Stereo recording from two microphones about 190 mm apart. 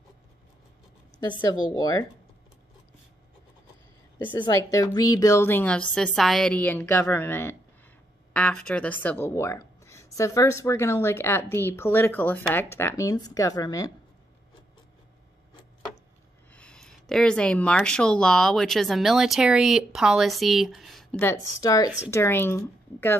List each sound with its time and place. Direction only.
1.4 s a woman's voice: 20° left (ahead or behind)
4.2 s speech: 25° left (ahead or behind)
16.5 s speech: 5° left (ahead or behind)